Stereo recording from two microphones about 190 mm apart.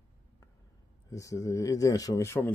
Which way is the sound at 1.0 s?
15° left (ahead or behind).